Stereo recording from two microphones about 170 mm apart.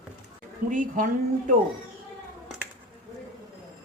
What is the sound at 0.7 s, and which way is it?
Speech, 50° right (ahead or behind).